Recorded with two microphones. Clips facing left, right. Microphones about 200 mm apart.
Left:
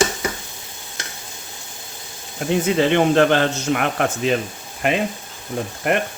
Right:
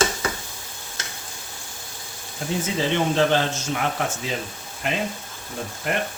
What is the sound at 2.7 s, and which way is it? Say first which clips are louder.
Speech: left 6 dB; 65° left (ahead or behind).